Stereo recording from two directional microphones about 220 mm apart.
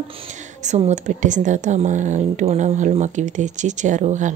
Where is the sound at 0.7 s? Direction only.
30° right (ahead or behind).